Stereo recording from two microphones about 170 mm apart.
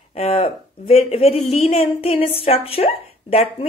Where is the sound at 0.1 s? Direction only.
35° left (ahead or behind).